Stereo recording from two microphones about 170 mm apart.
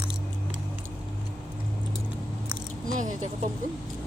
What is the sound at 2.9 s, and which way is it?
Vehicle, 50° right (ahead or behind).